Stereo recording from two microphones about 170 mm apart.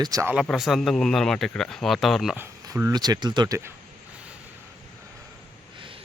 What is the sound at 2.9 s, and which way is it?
Speech, 25° right (ahead or behind).